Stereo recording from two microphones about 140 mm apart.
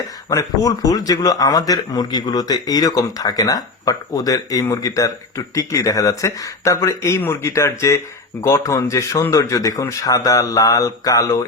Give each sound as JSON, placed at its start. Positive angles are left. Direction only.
{"t": 0.3, "sound": "speech", "side_deg": 25}